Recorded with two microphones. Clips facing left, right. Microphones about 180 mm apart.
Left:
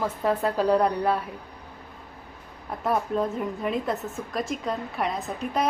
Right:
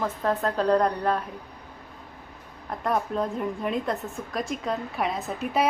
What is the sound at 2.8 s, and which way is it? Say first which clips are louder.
A woman's voice: left 1 dB; centre (ahead or behind).